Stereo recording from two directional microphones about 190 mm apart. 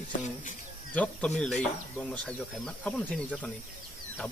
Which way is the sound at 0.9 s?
5° left (ahead or behind).